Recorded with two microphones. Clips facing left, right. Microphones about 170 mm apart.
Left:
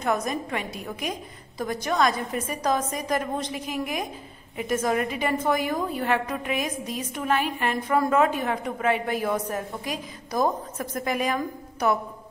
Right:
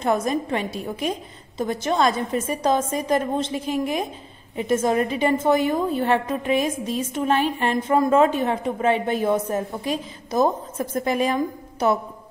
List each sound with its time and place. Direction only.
0.0 s a woman's voice: 30° right (ahead or behind)